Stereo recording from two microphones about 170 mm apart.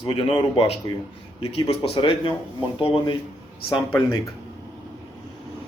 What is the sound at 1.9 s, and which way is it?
Speech, 30° left (ahead or behind).